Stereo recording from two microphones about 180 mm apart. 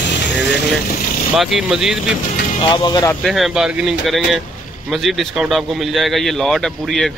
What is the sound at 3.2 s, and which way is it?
Speech, centre (ahead or behind).